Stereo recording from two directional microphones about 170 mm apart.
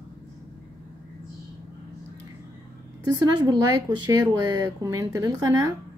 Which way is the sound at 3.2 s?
20° right (ahead or behind).